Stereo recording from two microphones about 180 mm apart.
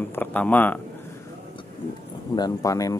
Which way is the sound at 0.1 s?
10° left (ahead or behind).